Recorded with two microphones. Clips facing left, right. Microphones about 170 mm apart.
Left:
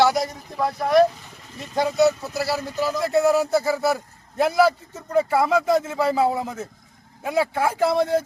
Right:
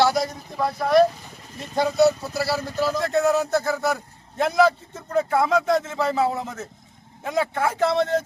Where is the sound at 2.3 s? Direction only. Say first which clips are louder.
Even; 15° left (ahead or behind).